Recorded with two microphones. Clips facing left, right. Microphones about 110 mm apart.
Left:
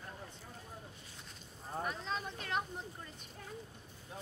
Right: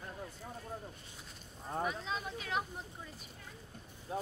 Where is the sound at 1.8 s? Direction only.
Centre (ahead or behind).